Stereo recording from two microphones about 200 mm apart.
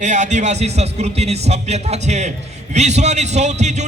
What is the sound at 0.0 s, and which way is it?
A man's voice, 35° right (ahead or behind).